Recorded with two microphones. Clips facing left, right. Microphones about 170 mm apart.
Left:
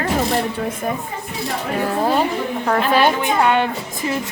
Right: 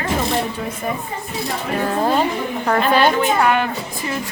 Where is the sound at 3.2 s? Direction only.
20° left (ahead or behind).